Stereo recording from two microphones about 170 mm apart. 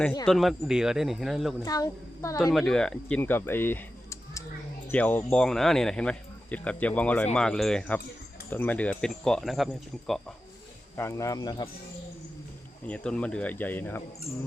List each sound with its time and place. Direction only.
0.3 s speech: centre (ahead or behind)
1.6 s a woman's voice: 20° left (ahead or behind)
2.4 s speech: centre (ahead or behind)
10.9 s speech: 15° left (ahead or behind)
12.9 s speech: 5° left (ahead or behind)